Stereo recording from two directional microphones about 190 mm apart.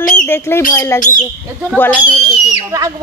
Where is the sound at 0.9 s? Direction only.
40° left (ahead or behind).